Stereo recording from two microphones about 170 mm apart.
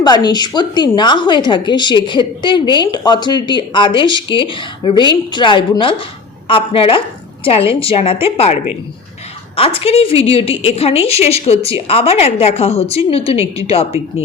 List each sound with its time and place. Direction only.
0.0 s a woman's voice: 25° left (ahead or behind)
9.6 s a woman's voice: 35° left (ahead or behind)